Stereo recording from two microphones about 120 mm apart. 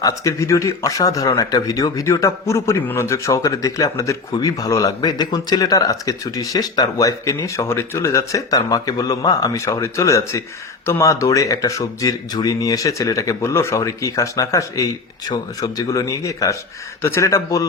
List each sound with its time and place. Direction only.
0.0 s speech: 25° left (ahead or behind)